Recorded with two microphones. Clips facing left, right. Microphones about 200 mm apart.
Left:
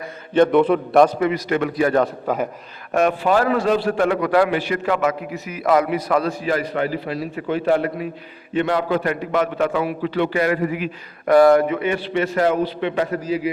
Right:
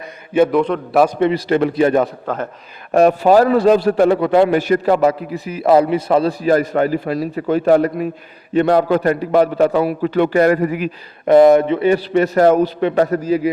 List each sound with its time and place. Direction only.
0.3 s a man's voice: 5° right (ahead or behind)
0.6 s a man's voice: 5° left (ahead or behind)
1.2 s a man's voice: 30° right (ahead or behind)
2.2 s a man's voice: 10° left (ahead or behind)
2.9 s a man's voice: 35° right (ahead or behind)
4.4 s a man's voice: 45° right (ahead or behind); by 6.3 s 30° right (ahead or behind)
6.4 s a man's voice: 45° right (ahead or behind)
11.3 s a man's voice: 20° right (ahead or behind); by 13.5 s 45° right (ahead or behind)